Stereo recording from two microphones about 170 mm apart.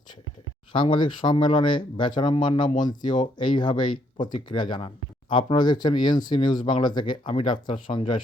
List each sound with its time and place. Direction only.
0.7 s speech: 30° left (ahead or behind)